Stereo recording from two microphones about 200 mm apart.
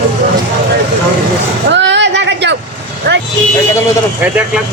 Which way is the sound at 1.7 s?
60° right (ahead or behind).